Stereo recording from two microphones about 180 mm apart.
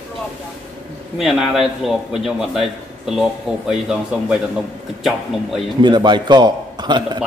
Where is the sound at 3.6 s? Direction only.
5° right (ahead or behind).